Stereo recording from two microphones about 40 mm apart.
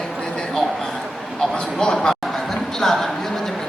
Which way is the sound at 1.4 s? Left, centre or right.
Centre.